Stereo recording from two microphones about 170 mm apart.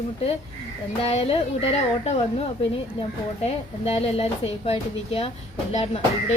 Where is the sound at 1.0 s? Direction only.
35° left (ahead or behind).